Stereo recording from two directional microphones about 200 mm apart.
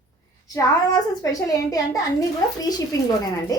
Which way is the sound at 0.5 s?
15° left (ahead or behind).